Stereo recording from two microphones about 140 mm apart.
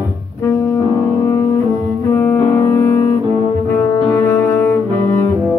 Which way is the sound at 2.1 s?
15° left (ahead or behind).